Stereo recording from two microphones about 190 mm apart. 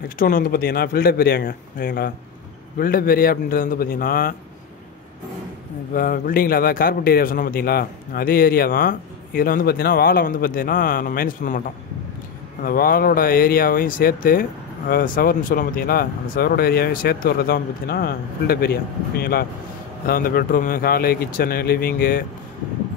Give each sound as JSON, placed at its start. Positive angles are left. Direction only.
{"t": 0.2, "sound": "a man's voice", "side_deg": 50}
{"t": 5.9, "sound": "a man's voice", "side_deg": 45}
{"t": 12.6, "sound": "a man's voice", "side_deg": 50}